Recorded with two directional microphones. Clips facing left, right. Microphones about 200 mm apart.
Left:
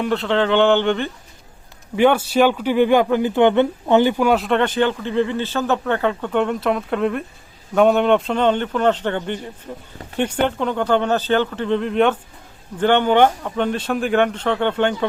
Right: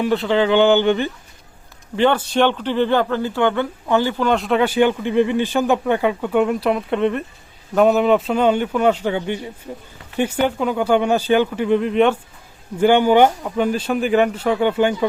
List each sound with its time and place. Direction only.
0.0 s speech: centre (ahead or behind)
2.0 s speech: 10° left (ahead or behind)
4.3 s speech: centre (ahead or behind)